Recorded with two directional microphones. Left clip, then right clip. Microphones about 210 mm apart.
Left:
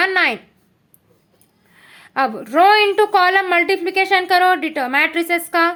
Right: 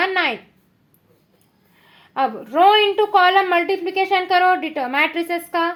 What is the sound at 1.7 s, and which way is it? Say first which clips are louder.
A woman's voice: left 4 dB; 25° left (ahead or behind).